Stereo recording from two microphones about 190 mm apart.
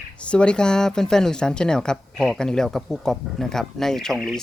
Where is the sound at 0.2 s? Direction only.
5° left (ahead or behind).